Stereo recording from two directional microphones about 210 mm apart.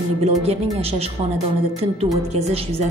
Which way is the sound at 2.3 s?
30° right (ahead or behind).